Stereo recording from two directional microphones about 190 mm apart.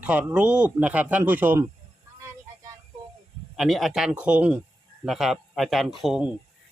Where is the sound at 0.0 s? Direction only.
5° right (ahead or behind).